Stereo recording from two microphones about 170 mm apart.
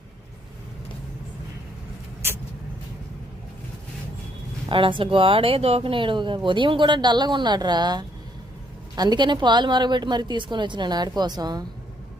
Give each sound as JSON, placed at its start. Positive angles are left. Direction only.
{"t": 4.7, "sound": "speech", "side_deg": -30}